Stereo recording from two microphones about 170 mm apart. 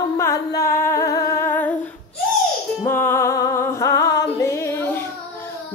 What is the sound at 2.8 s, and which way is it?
Music, 15° left (ahead or behind).